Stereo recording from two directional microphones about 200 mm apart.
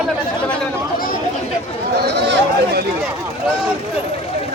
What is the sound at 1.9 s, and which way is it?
Chatter, 55° right (ahead or behind).